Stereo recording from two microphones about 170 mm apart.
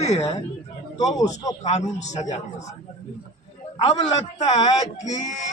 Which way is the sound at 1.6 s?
40° left (ahead or behind).